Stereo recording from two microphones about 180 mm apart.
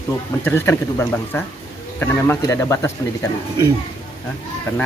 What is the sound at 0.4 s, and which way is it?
Speech, 10° left (ahead or behind).